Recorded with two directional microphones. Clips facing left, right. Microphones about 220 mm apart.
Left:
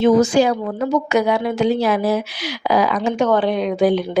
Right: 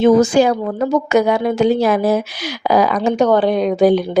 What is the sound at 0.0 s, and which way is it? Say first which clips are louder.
A woman's voice: right 2 dB; 50° right (ahead or behind).